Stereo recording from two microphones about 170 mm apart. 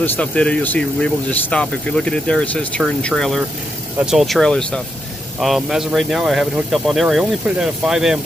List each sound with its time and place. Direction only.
0.0 s speech: 10° left (ahead or behind)